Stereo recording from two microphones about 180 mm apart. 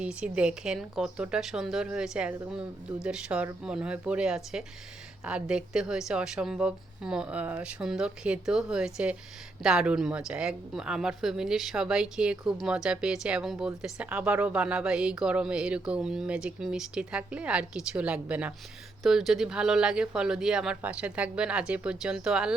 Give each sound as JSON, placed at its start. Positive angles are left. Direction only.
{"t": 0.0, "sound": "a woman's voice", "side_deg": -5}